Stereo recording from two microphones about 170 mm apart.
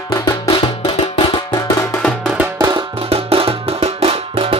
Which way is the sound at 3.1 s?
35° right (ahead or behind).